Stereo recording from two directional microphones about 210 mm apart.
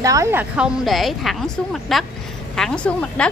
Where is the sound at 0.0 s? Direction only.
15° right (ahead or behind).